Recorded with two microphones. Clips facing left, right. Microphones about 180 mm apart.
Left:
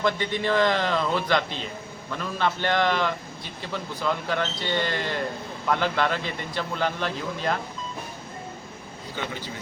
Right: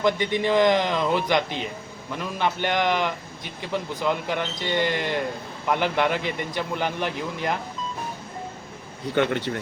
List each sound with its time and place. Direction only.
0.0 s a man's voice: 15° right (ahead or behind)
9.1 s speech: 65° right (ahead or behind)